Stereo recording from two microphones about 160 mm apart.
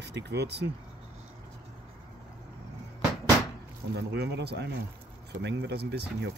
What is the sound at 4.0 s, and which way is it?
Speech, 90° right.